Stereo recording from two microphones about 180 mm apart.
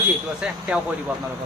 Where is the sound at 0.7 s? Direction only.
5° right (ahead or behind).